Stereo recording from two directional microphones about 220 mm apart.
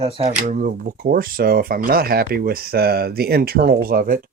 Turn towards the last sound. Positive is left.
turn(degrees=-40)  # may be behind; listen again after turning